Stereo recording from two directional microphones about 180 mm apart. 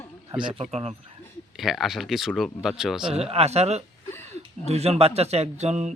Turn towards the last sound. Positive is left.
turn(degrees=-40)  # may be behind; listen again after turning